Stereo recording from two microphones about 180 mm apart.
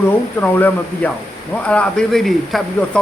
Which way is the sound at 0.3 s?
10° left (ahead or behind).